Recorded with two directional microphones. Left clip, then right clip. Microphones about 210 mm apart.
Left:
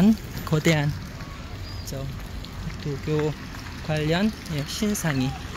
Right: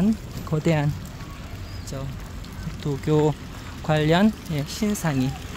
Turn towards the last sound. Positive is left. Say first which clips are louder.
# right 1 dB
turn(degrees=-10)  # may be behind; listen again after turning